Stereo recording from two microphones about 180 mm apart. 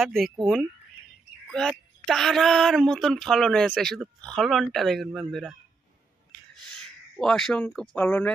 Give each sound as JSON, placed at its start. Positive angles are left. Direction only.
{"t": 0.0, "sound": "speech", "side_deg": 0}
{"t": 2.0, "sound": "speech", "side_deg": 0}
{"t": 7.2, "sound": "speech", "side_deg": 0}